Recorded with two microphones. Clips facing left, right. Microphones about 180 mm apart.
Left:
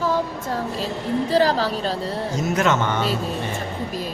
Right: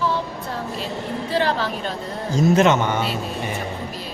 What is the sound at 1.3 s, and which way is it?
Speech, 40° left (ahead or behind).